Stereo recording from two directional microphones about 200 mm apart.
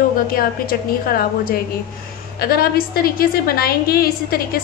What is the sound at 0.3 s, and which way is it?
A woman's voice, 45° left (ahead or behind).